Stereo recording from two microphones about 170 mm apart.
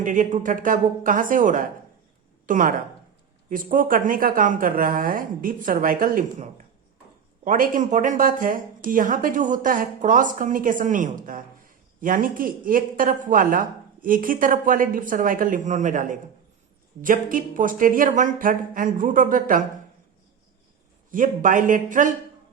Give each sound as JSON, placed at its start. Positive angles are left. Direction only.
{"t": 0.0, "sound": "speech", "side_deg": -50}
{"t": 21.1, "sound": "speech", "side_deg": -50}